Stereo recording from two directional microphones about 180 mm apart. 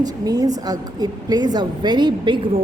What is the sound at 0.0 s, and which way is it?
A woman's voice, 20° right (ahead or behind).